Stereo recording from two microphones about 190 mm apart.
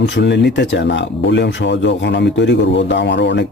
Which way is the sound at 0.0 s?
65° left (ahead or behind).